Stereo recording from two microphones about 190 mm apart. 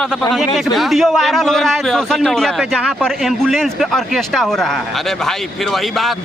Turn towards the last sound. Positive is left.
turn(degrees=0)  # may be behind; listen again after turning